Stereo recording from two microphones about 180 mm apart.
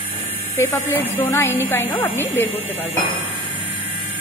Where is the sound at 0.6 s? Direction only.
10° left (ahead or behind).